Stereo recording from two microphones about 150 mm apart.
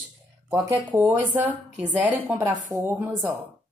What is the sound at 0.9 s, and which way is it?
A woman's voice, 10° right (ahead or behind).